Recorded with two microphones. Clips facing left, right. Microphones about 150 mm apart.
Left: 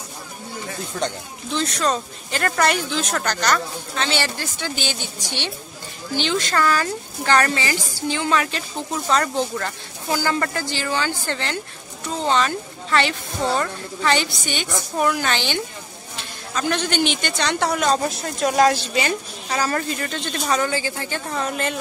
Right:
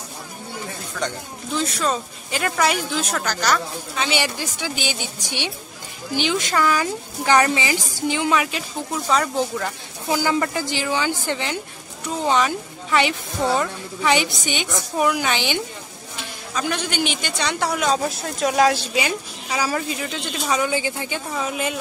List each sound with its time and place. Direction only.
1.5 s speech: 5° right (ahead or behind)
21.3 s a woman's voice: 5° right (ahead or behind)